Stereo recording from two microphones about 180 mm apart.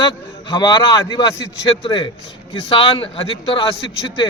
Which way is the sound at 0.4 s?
20° left (ahead or behind).